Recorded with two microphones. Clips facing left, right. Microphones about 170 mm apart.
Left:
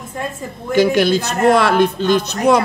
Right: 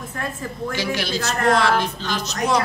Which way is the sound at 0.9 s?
50° left (ahead or behind).